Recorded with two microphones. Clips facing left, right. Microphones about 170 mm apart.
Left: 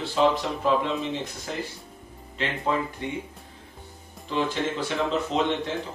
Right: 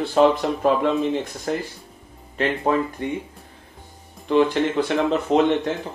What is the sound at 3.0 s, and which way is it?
Speech, 45° right (ahead or behind).